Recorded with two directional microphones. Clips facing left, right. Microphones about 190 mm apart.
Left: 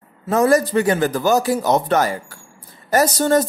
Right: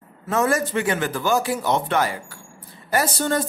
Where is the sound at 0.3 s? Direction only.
35° left (ahead or behind).